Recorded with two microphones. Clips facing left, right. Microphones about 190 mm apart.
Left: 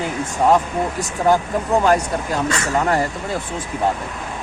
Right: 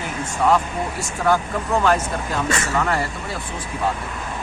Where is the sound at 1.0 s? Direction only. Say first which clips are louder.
Left 2 dB; 15° left (ahead or behind).